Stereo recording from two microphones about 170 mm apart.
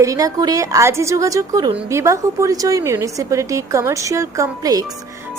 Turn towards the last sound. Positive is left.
turn(degrees=-20)  # may be behind; listen again after turning